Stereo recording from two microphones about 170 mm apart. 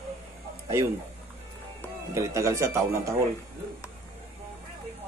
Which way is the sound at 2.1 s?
15° right (ahead or behind).